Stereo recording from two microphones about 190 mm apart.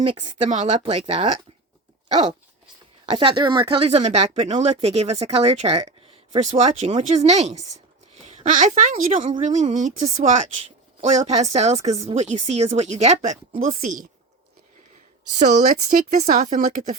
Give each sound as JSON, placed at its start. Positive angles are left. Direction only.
{"t": 0.0, "sound": "speech", "side_deg": -25}
{"t": 3.1, "sound": "speech", "side_deg": -25}
{"t": 15.5, "sound": "speech", "side_deg": -45}